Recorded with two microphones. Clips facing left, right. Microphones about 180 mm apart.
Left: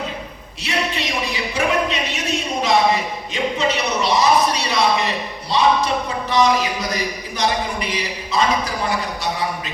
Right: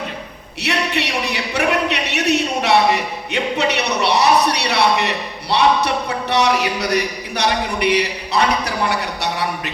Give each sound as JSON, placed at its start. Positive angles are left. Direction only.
{"t": 0.6, "sound": "a man's voice", "side_deg": -70}